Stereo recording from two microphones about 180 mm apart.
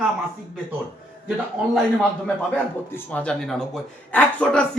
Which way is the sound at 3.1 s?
5° left (ahead or behind).